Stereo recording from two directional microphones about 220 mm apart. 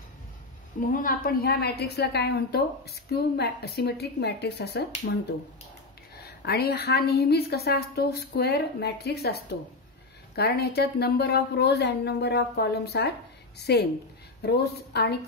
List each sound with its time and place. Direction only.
0.7 s a woman's voice: 40° left (ahead or behind)